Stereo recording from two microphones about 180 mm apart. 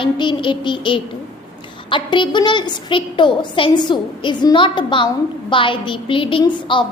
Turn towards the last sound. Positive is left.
turn(degrees=25)  # may be behind; listen again after turning